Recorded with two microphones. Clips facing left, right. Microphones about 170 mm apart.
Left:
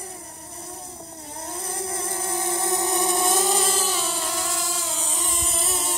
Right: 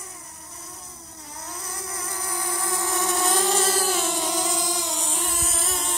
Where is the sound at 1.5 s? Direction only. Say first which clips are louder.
Left 6 dB; 30° left (ahead or behind).